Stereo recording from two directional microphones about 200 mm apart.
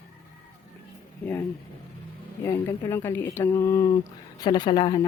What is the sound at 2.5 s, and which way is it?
Speech, 10° left (ahead or behind).